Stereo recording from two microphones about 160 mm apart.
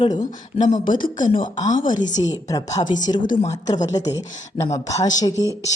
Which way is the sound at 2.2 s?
25° left (ahead or behind).